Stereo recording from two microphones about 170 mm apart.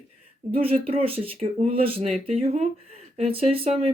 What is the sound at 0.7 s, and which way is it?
Speech, 35° right (ahead or behind).